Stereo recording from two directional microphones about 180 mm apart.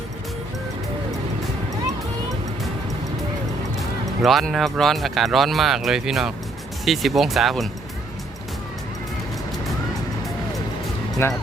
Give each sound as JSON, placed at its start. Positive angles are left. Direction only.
{"t": 3.8, "sound": "speech", "side_deg": 0}
{"t": 11.2, "sound": "speech", "side_deg": 15}